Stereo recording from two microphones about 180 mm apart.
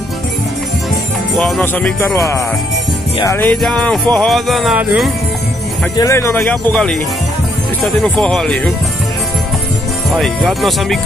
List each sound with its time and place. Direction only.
1.3 s speech: 5° left (ahead or behind)
3.2 s speech: 20° left (ahead or behind)
3.4 s speech: 5° left (ahead or behind)
5.9 s speech: 15° left (ahead or behind)
6.3 s speech: 5° left (ahead or behind)
10.1 s speech: centre (ahead or behind)